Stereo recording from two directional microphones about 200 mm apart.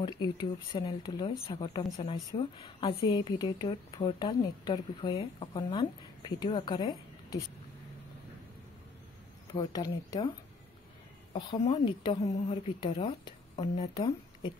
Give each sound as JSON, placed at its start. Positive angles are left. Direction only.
{"t": 0.0, "sound": "speech", "side_deg": 20}
{"t": 9.5, "sound": "speech", "side_deg": 20}
{"t": 11.7, "sound": "speech", "side_deg": 25}